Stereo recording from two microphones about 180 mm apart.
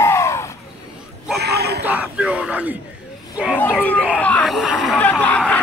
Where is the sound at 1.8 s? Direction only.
10° right (ahead or behind).